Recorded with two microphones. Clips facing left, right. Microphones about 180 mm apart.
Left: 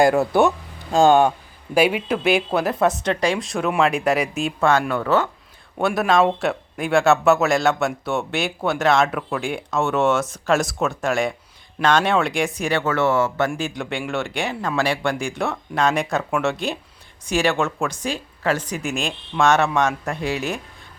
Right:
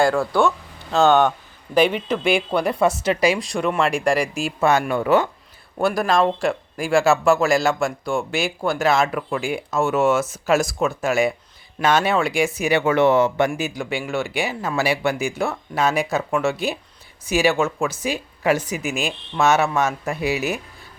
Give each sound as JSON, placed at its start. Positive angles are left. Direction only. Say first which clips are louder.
{"t": 0.0, "sound": "speech", "louder": "left 2 dB", "side_deg": 20}
{"t": 5.8, "sound": "speech", "louder": "left 1 dB", "side_deg": 0}
{"t": 13.5, "sound": "speech", "louder": "right 1 dB", "side_deg": -5}